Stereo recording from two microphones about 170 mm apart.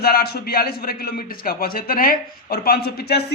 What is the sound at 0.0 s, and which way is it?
A man's voice, 65° left (ahead or behind).